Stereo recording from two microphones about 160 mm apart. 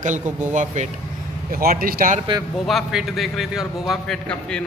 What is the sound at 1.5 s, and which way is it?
Speech, 65° right (ahead or behind).